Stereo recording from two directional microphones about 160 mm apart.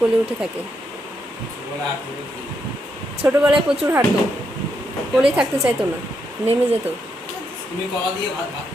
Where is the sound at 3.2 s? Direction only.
10° right (ahead or behind).